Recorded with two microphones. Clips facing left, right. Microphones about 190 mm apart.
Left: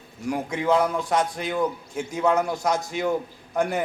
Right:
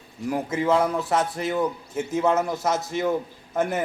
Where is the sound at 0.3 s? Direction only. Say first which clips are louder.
Even; 5° right (ahead or behind).